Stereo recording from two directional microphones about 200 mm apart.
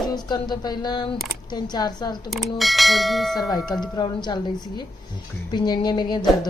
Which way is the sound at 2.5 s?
Centre (ahead or behind).